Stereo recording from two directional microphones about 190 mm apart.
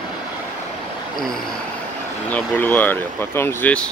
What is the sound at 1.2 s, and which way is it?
Speech, 5° left (ahead or behind).